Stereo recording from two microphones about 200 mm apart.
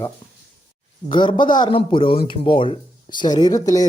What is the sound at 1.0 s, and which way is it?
A man's voice, 25° left (ahead or behind).